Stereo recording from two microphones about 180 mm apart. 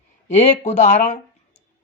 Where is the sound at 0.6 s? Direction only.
40° left (ahead or behind).